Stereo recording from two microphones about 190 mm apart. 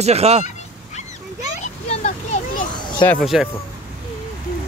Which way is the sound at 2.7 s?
25° left (ahead or behind).